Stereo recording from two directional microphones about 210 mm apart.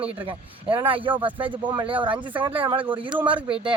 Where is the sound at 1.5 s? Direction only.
25° right (ahead or behind).